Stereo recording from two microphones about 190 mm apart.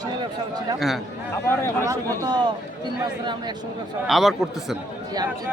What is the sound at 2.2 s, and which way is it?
Speech, 20° right (ahead or behind).